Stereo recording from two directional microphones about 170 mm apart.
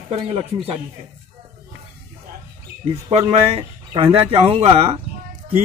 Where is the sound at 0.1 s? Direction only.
35° right (ahead or behind).